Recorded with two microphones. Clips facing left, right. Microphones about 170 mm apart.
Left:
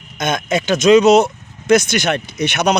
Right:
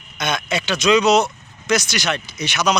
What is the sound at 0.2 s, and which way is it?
Speech, 45° left (ahead or behind).